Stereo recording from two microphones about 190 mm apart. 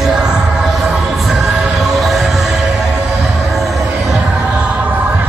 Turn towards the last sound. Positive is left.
turn(degrees=-10)  # may be behind; listen again after turning